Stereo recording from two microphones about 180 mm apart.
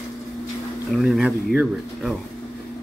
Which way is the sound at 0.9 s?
Centre (ahead or behind).